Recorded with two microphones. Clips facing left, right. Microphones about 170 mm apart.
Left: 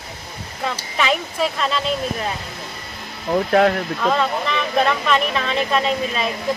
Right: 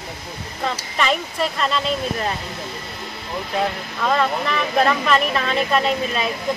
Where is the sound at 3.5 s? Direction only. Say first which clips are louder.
Left 7 dB; 65° left (ahead or behind).